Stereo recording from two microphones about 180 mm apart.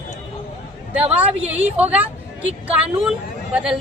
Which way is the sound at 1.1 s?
10° right (ahead or behind).